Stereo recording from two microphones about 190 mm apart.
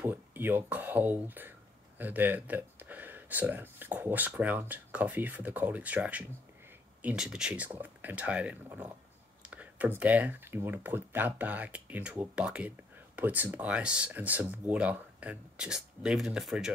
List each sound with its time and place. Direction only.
0.0 s speech: 10° right (ahead or behind)